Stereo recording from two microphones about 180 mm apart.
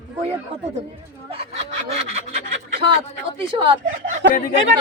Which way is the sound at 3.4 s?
30° right (ahead or behind).